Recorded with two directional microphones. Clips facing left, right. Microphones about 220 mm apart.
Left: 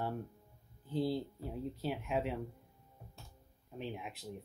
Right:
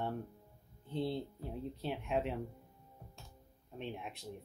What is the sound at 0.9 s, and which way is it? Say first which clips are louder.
Speech: left 2 dB; centre (ahead or behind).